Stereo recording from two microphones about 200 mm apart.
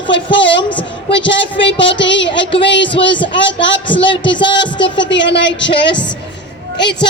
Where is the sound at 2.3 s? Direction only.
25° left (ahead or behind).